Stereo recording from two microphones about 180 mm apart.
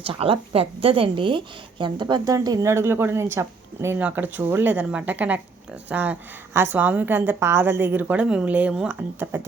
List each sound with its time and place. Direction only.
0.1 s a woman's voice: 30° right (ahead or behind); by 9.4 s 10° right (ahead or behind)